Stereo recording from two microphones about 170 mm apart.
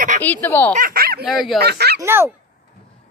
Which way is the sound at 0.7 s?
60° right (ahead or behind).